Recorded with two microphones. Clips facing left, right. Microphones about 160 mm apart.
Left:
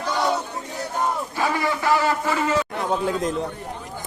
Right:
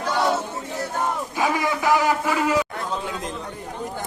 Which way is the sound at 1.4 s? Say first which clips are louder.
Right 2 dB; 15° right (ahead or behind).